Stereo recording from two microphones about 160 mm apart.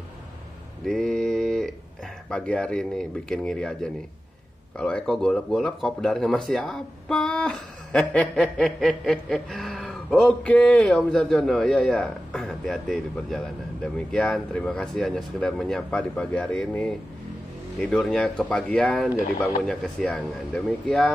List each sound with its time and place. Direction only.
0.8 s mantra: 5° left (ahead or behind)
2.2 s speech: 5° left (ahead or behind)